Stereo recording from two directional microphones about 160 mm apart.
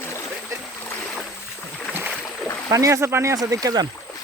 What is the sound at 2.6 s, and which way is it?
Speech, 20° right (ahead or behind).